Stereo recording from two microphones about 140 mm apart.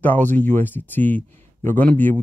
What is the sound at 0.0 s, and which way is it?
Speech, 15° left (ahead or behind).